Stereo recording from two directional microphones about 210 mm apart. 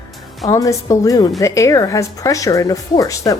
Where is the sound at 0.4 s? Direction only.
15° left (ahead or behind).